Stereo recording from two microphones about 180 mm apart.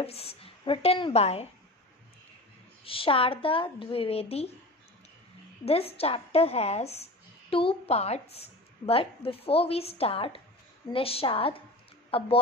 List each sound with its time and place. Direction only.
0.0 s speech: 35° left (ahead or behind)
2.8 s a woman's voice: 30° left (ahead or behind)
5.7 s a woman's voice: 35° left (ahead or behind)